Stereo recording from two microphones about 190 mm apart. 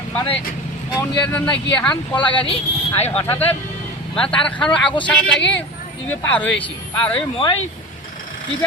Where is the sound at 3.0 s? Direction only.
10° left (ahead or behind).